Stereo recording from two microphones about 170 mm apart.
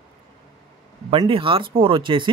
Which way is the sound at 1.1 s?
30° right (ahead or behind).